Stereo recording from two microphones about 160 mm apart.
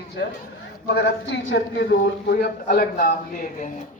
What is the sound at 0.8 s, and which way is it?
A man's voice, 90° left.